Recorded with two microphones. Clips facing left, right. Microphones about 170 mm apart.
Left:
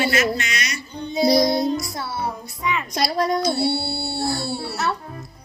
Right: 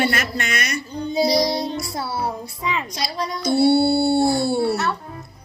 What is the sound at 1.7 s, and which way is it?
Music, 30° right (ahead or behind).